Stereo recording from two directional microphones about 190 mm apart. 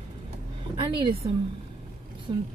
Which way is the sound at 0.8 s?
30° right (ahead or behind).